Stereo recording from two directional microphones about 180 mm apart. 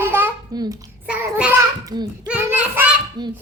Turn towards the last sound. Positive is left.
turn(degrees=-20)  # may be behind; listen again after turning